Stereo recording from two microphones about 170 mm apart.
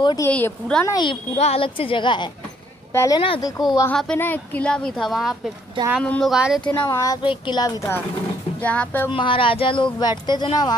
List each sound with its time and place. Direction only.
0.0 s speech: 25° left (ahead or behind)
0.3 s a woman's voice: 5° left (ahead or behind)
0.8 s speech: 25° left (ahead or behind)
1.3 s a woman's voice: 35° left (ahead or behind)
2.9 s speech: 15° left (ahead or behind)
3.9 s a woman's voice: 10° left (ahead or behind)
6.3 s a woman's voice: 5° right (ahead or behind)
6.6 s speech: 15° left (ahead or behind)
8.5 s a woman's voice: 10° left (ahead or behind)
9.1 s a woman's voice: 30° left (ahead or behind)